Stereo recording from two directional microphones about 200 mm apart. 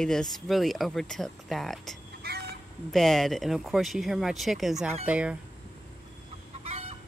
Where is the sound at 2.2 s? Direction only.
50° right (ahead or behind).